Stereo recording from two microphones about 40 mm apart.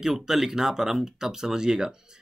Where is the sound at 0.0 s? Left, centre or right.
Centre.